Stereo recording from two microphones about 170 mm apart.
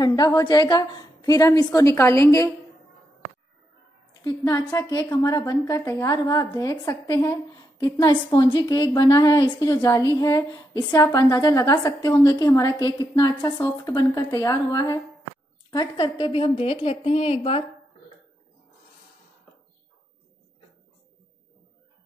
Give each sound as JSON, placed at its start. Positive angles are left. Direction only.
{"t": 0.0, "sound": "a woman's voice", "side_deg": 20}
{"t": 4.5, "sound": "a woman's voice", "side_deg": 20}